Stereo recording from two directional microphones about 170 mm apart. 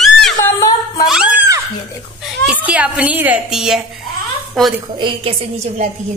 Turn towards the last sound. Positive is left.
turn(degrees=-35)  # may be behind; listen again after turning